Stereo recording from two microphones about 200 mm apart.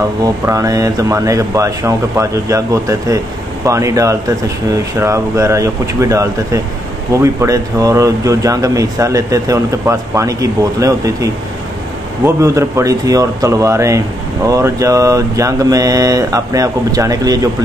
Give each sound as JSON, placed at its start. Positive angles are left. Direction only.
{"t": 0.2, "sound": "speech", "side_deg": -15}
{"t": 12.4, "sound": "speech", "side_deg": -15}